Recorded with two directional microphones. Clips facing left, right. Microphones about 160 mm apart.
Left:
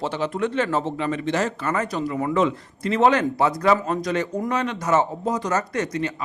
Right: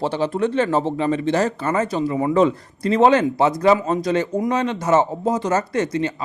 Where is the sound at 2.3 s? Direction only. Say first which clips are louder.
Right 5 dB; 35° right (ahead or behind).